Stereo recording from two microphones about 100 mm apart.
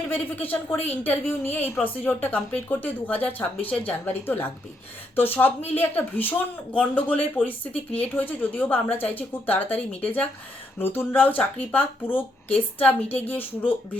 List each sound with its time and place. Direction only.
0.1 s a woman's voice: 20° left (ahead or behind)